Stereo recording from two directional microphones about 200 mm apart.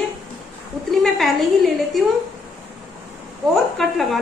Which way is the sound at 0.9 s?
Centre (ahead or behind).